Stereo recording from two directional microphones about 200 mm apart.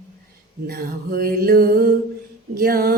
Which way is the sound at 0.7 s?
50° right (ahead or behind).